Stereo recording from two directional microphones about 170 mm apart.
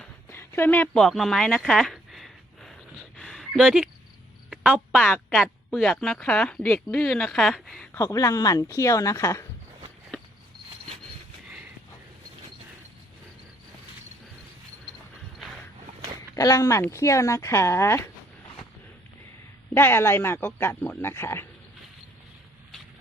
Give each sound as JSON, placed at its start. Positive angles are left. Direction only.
{"t": 0.0, "sound": "a sound", "side_deg": 15}
{"t": 4.4, "sound": "a woman's voice", "side_deg": -5}
{"t": 7.9, "sound": "speech", "side_deg": 20}
{"t": 10.1, "sound": "walk", "side_deg": 5}
{"t": 16.3, "sound": "speech", "side_deg": 20}
{"t": 19.7, "sound": "speech", "side_deg": 15}